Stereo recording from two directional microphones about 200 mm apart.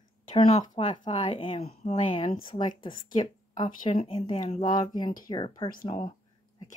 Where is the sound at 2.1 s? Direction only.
25° left (ahead or behind).